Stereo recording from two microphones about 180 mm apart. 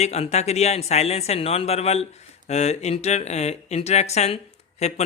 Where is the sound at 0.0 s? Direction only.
35° left (ahead or behind).